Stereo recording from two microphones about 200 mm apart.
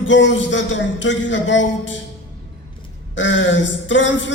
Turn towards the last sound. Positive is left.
turn(degrees=65)  # may be behind; listen again after turning